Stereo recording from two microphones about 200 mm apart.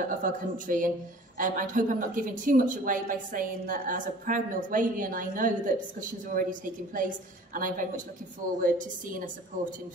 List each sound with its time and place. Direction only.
0.2 s a woman's voice: 40° right (ahead or behind)